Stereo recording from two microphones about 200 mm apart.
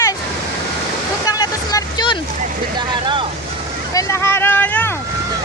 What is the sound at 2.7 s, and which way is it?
Speech, 25° right (ahead or behind).